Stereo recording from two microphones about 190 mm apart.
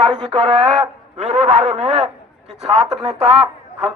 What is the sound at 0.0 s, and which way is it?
A man's voice, 25° right (ahead or behind).